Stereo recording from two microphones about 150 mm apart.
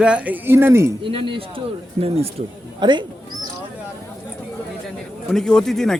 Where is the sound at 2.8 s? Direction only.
30° right (ahead or behind).